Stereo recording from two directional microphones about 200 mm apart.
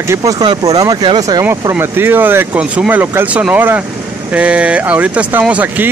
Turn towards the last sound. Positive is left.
turn(degrees=-5)  # may be behind; listen again after turning